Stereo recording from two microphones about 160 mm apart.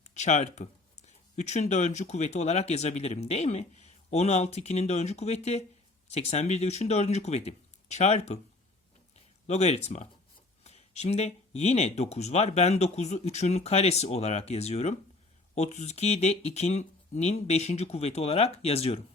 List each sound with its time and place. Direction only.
0.0 s speech: 45° left (ahead or behind)